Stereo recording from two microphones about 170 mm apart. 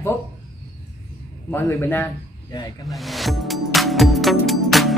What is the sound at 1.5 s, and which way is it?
Speech, 10° left (ahead or behind).